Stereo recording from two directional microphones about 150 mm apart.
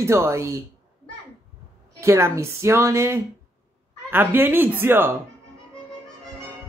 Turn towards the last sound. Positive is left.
turn(degrees=-15)  # may be behind; listen again after turning